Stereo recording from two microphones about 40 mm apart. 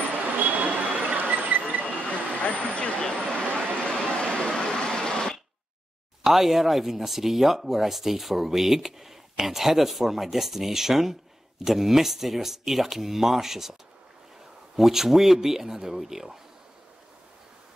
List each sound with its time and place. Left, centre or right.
0.2 s vehicle: right
1.9 s vehicle: left
3.8 s a sound: left
6.2 s speech: centre
14.8 s speech: centre